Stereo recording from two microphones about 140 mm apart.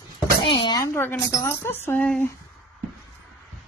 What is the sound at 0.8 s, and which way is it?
A woman's voice, 15° left (ahead or behind).